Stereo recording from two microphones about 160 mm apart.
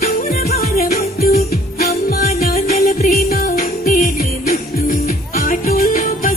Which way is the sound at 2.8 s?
65° left (ahead or behind).